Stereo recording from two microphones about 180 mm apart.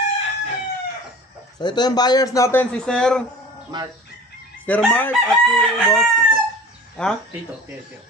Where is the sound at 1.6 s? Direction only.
25° left (ahead or behind).